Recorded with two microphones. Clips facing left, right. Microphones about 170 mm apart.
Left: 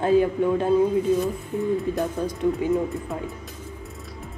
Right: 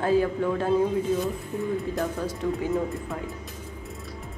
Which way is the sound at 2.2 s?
20° left (ahead or behind).